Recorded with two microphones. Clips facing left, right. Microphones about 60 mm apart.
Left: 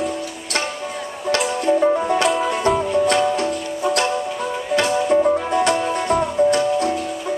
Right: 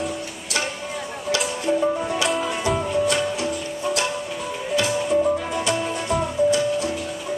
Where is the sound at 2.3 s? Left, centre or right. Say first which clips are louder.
Left 4 dB; centre.